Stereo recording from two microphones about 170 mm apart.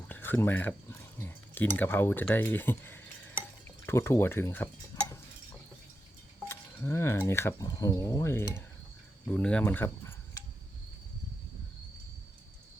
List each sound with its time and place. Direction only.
0.1 s speech: 10° left (ahead or behind)
3.8 s stir: 15° left (ahead or behind)
6.4 s speech: 15° left (ahead or behind)